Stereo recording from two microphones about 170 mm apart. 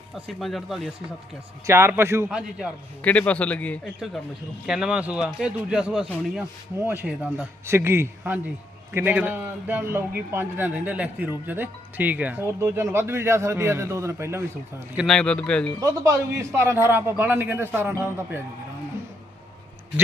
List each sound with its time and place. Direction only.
0.3 s speech: centre (ahead or behind)
1.6 s a man's voice: 15° right (ahead or behind)
3.0 s a man's voice: 10° left (ahead or behind)
6.7 s a man's voice: 10° right (ahead or behind)
14.9 s speech: centre (ahead or behind)
15.8 s a man's voice: 20° right (ahead or behind)